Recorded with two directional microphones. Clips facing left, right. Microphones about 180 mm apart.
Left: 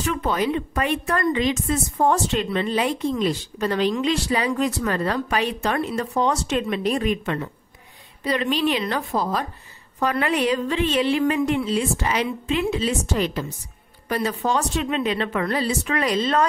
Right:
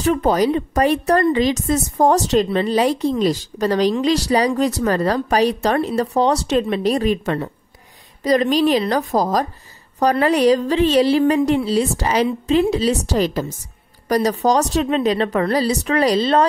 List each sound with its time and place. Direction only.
0.0 s a woman's voice: 40° right (ahead or behind)